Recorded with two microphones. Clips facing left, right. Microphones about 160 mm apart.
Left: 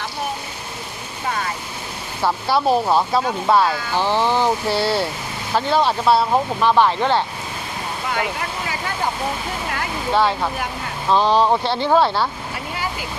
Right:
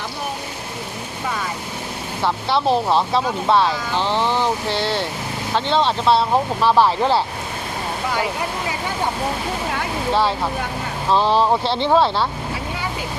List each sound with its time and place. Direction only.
2.2 s speech: 5° left (ahead or behind)
4.0 s speech: 15° left (ahead or behind); by 7.3 s 5° right (ahead or behind)
10.1 s speech: centre (ahead or behind)